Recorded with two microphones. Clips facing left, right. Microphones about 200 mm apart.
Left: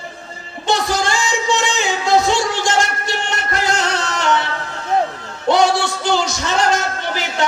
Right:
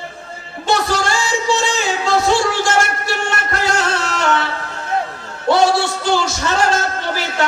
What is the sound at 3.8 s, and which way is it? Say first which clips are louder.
Music: right 1 dB; 15° left (ahead or behind).